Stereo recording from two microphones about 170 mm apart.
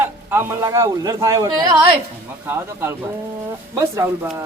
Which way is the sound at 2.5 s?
15° right (ahead or behind).